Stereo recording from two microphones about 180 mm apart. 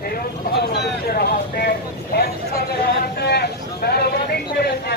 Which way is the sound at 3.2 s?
65° left (ahead or behind).